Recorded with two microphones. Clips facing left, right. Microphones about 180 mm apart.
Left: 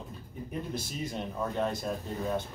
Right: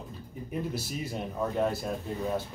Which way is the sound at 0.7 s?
5° right (ahead or behind).